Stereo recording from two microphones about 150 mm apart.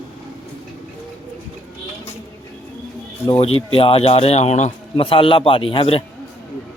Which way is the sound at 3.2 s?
40° left (ahead or behind).